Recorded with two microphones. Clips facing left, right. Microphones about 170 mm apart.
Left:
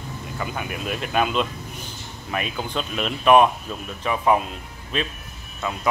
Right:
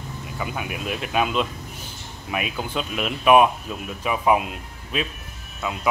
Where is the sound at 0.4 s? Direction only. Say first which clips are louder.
Even; 5° right (ahead or behind).